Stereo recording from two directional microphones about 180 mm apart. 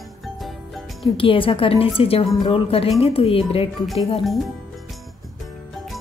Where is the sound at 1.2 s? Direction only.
30° left (ahead or behind).